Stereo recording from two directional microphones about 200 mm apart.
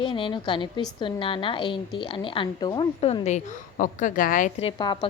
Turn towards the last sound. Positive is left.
turn(degrees=20)  # may be behind; listen again after turning